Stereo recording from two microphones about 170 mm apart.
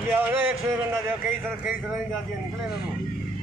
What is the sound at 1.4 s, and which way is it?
Speech, 10° right (ahead or behind).